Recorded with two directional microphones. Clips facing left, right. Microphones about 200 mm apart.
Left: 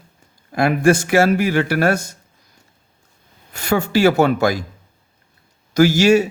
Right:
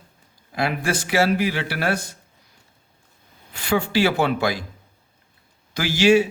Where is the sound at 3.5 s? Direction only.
45° left (ahead or behind).